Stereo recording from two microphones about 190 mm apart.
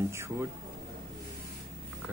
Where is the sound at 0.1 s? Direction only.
15° right (ahead or behind).